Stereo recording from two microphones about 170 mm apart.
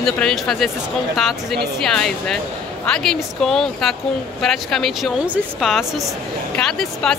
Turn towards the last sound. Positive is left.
turn(degrees=5)  # may be behind; listen again after turning